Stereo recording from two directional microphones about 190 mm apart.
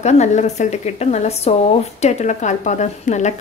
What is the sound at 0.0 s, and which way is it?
A woman's voice, 35° left (ahead or behind).